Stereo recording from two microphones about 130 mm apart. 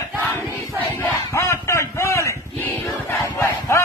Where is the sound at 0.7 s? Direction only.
20° left (ahead or behind).